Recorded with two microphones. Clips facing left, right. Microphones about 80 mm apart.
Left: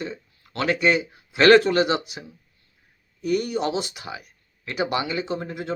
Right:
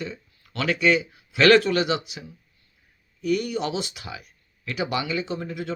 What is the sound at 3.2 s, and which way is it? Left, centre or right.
Speech, left.